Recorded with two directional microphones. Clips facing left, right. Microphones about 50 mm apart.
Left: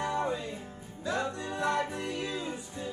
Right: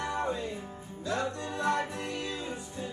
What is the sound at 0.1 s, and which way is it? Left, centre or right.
Music, centre.